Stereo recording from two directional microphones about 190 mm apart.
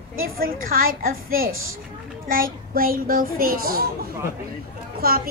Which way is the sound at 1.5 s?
90° right.